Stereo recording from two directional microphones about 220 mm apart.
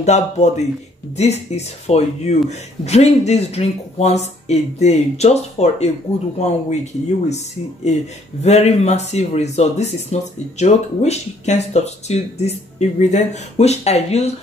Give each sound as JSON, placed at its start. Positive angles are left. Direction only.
{"t": 0.0, "sound": "speech", "side_deg": 30}
{"t": 8.4, "sound": "speech", "side_deg": 30}